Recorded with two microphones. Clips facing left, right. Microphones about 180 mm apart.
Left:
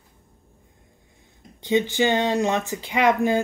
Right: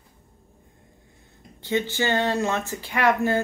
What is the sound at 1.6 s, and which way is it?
Speech, 15° left (ahead or behind).